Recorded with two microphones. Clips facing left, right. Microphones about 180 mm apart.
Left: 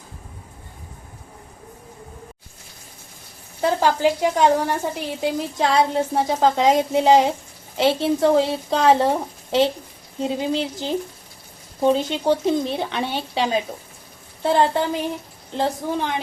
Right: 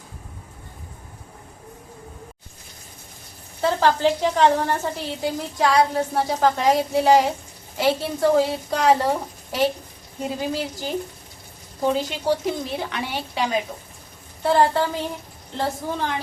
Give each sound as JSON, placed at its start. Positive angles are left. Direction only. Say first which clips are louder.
{"t": 3.6, "sound": "a woman's voice", "louder": "left 1 dB", "side_deg": 15}
{"t": 10.2, "sound": "a woman's voice", "louder": "left 3 dB", "side_deg": 25}